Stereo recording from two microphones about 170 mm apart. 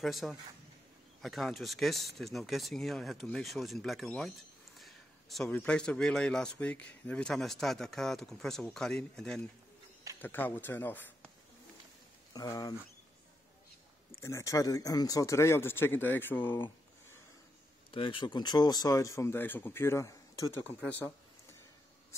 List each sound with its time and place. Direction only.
0.0 s a man's voice: centre (ahead or behind)
12.4 s speech: 20° left (ahead or behind)
14.2 s speech: 15° left (ahead or behind)
17.9 s speech: 30° left (ahead or behind); by 21.1 s 10° left (ahead or behind)